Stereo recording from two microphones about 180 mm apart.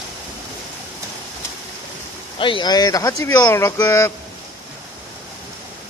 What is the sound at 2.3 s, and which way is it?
Speech, 30° left (ahead or behind).